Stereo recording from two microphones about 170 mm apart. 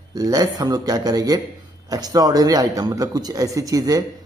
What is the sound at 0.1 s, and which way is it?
A man's voice, 20° right (ahead or behind).